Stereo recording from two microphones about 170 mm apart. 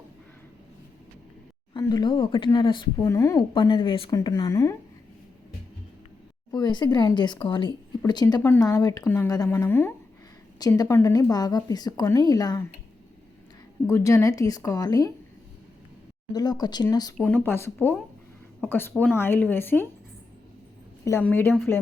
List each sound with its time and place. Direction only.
1.7 s speech: 25° left (ahead or behind)
3.5 s speech: 25° left (ahead or behind)
6.5 s speech: 25° left (ahead or behind)
13.8 s speech: 20° left (ahead or behind)
16.3 s speech: 25° left (ahead or behind)
17.2 s speech: 10° left (ahead or behind)
21.0 s speech: 15° left (ahead or behind)